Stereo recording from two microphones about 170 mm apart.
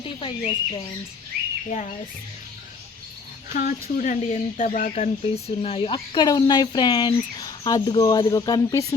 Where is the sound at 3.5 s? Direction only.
50° left (ahead or behind).